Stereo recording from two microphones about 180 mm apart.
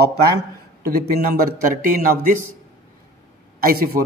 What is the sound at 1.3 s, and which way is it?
Speech, 50° right (ahead or behind).